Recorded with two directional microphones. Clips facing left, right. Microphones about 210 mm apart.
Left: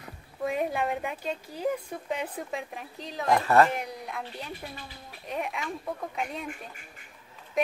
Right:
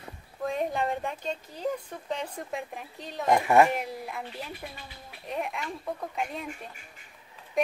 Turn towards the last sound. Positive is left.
turn(degrees=0)  # may be behind; listen again after turning